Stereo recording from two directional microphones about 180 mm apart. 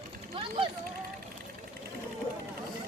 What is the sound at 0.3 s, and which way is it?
Speech, 35° right (ahead or behind).